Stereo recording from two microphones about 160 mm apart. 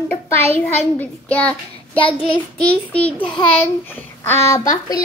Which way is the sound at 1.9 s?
35° left (ahead or behind).